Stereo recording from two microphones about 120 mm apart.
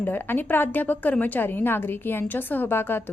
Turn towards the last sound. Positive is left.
turn(degrees=15)  # may be behind; listen again after turning